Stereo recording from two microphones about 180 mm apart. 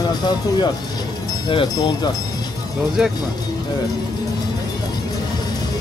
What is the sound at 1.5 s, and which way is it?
Speech, 25° left (ahead or behind).